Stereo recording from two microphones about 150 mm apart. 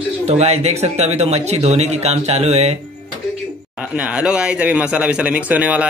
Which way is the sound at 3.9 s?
10° right (ahead or behind).